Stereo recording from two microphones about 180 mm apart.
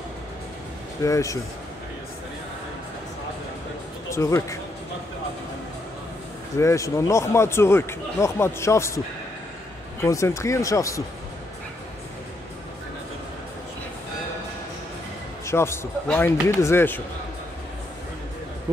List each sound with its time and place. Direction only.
1.0 s speech: 15° left (ahead or behind)
4.1 s speech: 15° left (ahead or behind)
6.6 s speech: 15° left (ahead or behind)
10.0 s speech: 15° left (ahead or behind)
15.4 s speech: 15° left (ahead or behind)